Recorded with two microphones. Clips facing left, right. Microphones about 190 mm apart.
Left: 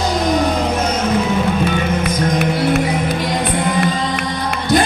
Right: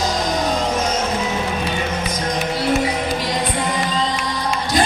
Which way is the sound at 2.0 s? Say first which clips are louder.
Left 5 dB; 55° left (ahead or behind).